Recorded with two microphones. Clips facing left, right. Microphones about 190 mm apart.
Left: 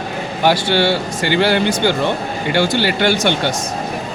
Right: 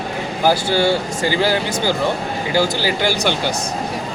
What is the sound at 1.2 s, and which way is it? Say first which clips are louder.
Speech: left 4 dB; 70° left (ahead or behind).